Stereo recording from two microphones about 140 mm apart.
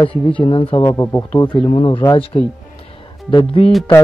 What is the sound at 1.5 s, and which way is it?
Speech, 35° left (ahead or behind).